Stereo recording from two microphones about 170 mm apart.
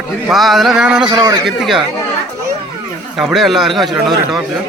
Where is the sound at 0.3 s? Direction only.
Centre (ahead or behind).